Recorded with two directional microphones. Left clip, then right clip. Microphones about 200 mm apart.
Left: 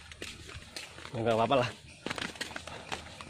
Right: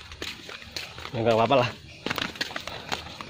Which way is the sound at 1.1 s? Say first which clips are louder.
Right 6 dB; 5° left (ahead or behind).